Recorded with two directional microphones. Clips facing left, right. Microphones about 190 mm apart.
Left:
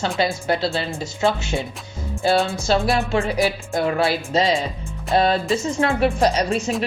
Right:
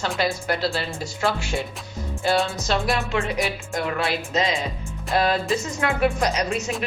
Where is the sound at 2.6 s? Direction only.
30° left (ahead or behind).